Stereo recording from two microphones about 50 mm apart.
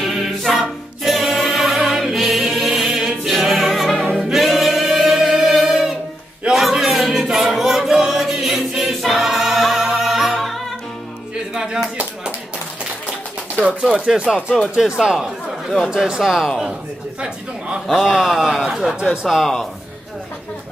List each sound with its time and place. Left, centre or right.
0.0 s choir: centre
0.5 s music: centre
6.5 s a sound: centre
7.5 s choir: centre
9.8 s music: centre
11.5 s a sound: centre
13.7 s speech: centre
18.0 s speech: centre
18.8 s speech: centre
19.2 s speech: centre